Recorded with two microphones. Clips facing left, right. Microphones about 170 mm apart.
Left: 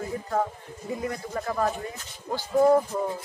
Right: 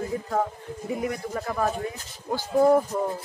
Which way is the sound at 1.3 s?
Centre (ahead or behind).